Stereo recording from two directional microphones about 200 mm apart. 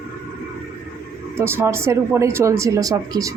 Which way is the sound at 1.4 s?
10° right (ahead or behind).